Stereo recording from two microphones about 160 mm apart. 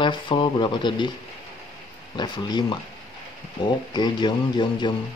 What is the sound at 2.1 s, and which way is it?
Speech, 25° left (ahead or behind).